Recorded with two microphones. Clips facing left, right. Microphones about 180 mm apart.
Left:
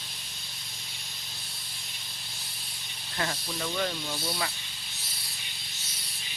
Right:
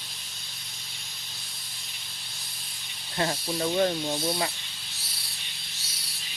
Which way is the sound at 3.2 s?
30° right (ahead or behind).